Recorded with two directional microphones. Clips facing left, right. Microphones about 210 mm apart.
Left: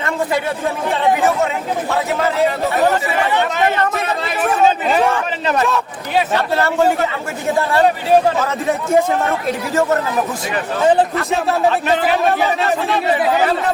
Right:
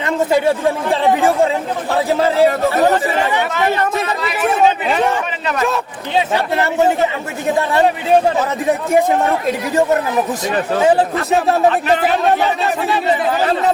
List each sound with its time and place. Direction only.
0.3 s speech: 30° right (ahead or behind)
1.9 s speech: 30° right (ahead or behind)
6.3 s speech: 20° right (ahead or behind)